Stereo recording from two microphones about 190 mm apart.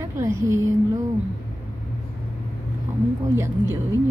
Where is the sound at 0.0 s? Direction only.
15° right (ahead or behind).